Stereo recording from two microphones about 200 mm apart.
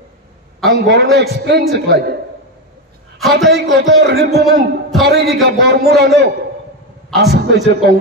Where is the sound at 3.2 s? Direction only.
Centre (ahead or behind).